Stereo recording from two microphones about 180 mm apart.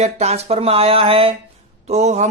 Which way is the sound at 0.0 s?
35° right (ahead or behind).